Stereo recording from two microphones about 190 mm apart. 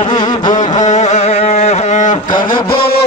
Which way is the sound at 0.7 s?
40° left (ahead or behind).